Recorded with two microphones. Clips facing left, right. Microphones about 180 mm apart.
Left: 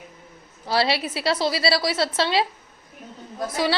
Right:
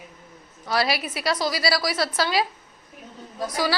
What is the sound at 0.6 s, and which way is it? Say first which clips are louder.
A woman's voice: left 2 dB; 30° left (ahead or behind).